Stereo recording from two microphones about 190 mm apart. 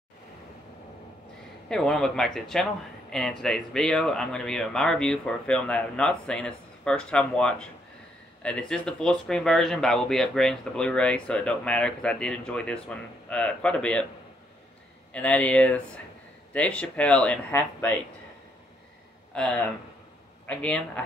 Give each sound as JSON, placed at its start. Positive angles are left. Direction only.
{"t": 1.7, "sound": "speech", "side_deg": 5}
{"t": 15.1, "sound": "speech", "side_deg": 5}
{"t": 19.3, "sound": "speech", "side_deg": 5}